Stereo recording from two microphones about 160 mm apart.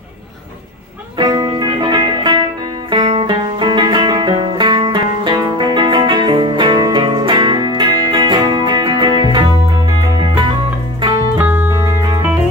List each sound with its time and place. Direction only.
1.1 s music: 25° right (ahead or behind)
11.3 s music: 10° right (ahead or behind)